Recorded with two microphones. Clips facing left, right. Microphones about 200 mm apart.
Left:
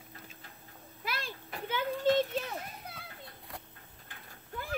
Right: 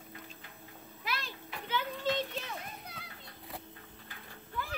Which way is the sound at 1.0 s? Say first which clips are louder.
Left 1 dB; 50° left (ahead or behind).